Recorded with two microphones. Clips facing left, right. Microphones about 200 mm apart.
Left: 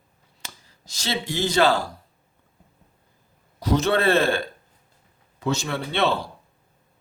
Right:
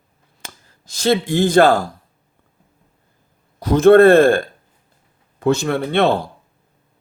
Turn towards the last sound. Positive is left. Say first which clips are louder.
# right 7 dB
turn(degrees=-50)  # may be behind; listen again after turning